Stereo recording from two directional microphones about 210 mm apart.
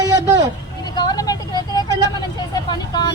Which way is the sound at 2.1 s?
20° left (ahead or behind).